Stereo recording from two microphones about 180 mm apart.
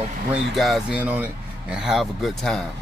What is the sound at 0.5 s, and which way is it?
Speech, centre (ahead or behind).